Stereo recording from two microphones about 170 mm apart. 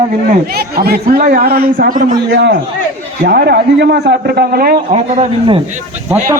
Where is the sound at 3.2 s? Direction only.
65° right (ahead or behind).